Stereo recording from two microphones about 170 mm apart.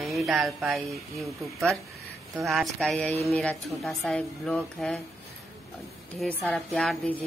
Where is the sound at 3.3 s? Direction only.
5° left (ahead or behind).